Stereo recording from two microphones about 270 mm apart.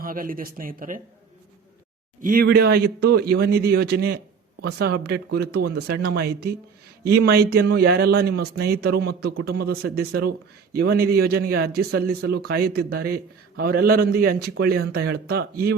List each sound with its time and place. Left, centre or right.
0.0 s a man's voice: right
2.2 s a man's voice: right